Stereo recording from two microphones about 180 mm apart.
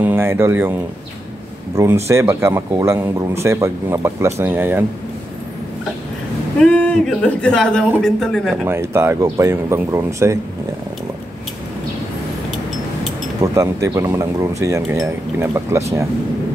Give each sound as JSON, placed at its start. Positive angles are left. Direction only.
{"t": 0.0, "sound": "speech", "side_deg": -15}
{"t": 1.8, "sound": "speech", "side_deg": -15}
{"t": 6.6, "sound": "speech", "side_deg": 5}
{"t": 8.6, "sound": "speech", "side_deg": -15}
{"t": 13.4, "sound": "speech", "side_deg": -15}